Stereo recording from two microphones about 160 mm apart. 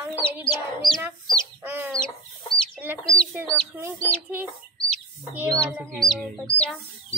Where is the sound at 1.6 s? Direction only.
10° right (ahead or behind).